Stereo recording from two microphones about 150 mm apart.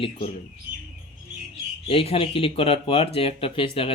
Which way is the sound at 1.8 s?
40° left (ahead or behind).